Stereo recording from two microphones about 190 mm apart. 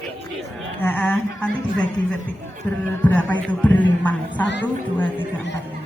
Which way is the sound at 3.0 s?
10° left (ahead or behind).